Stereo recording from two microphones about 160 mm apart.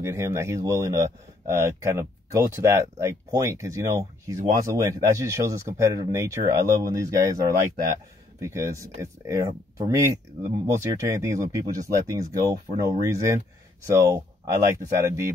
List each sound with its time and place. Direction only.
0.0 s speech: 15° right (ahead or behind)